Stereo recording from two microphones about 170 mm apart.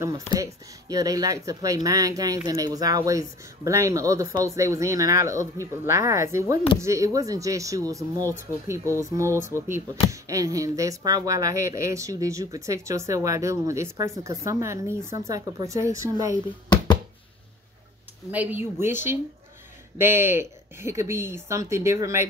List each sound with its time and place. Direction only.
0.3 s speech: 20° right (ahead or behind)
16.6 s a sound: 25° left (ahead or behind)
18.3 s speech: 10° right (ahead or behind)